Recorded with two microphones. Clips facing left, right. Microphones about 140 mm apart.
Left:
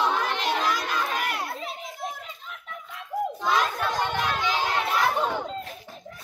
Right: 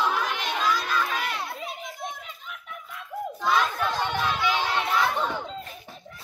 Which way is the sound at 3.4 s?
15° left (ahead or behind).